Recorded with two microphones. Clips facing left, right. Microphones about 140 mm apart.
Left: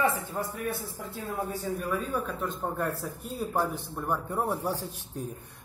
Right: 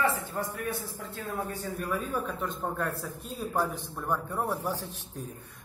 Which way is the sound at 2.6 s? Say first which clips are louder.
Left 2 dB; 10° left (ahead or behind).